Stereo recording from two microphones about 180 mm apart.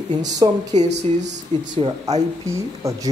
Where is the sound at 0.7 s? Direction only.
40° right (ahead or behind).